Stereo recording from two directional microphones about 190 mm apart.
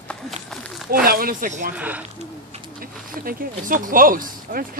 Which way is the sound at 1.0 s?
50° right (ahead or behind).